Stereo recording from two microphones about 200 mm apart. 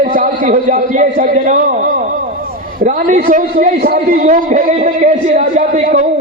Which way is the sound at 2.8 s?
40° right (ahead or behind).